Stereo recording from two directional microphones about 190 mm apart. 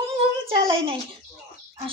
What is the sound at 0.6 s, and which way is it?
Speech, 25° right (ahead or behind).